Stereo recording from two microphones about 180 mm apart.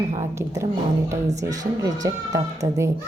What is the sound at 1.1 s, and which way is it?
A woman's voice, 20° right (ahead or behind).